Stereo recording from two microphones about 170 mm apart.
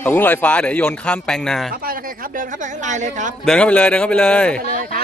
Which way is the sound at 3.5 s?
5° left (ahead or behind).